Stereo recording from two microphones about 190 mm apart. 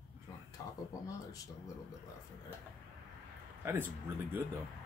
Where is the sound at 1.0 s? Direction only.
20° left (ahead or behind).